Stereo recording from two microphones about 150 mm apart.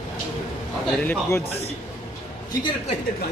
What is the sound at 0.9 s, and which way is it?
Speech, 5° left (ahead or behind).